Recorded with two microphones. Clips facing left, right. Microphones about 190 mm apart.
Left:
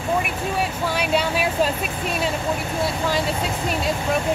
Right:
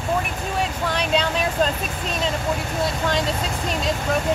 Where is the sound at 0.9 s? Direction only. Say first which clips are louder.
Even; 5° left (ahead or behind).